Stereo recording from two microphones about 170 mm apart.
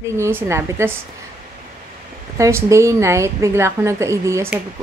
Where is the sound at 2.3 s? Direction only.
15° right (ahead or behind).